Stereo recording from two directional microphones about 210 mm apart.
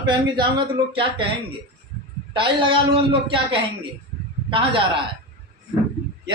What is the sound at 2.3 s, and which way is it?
Speech, 25° right (ahead or behind).